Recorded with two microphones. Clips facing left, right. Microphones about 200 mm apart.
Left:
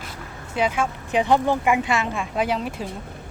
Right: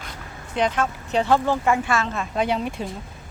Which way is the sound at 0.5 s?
10° left (ahead or behind).